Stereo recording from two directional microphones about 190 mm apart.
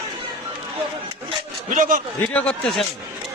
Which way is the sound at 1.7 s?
45° right (ahead or behind).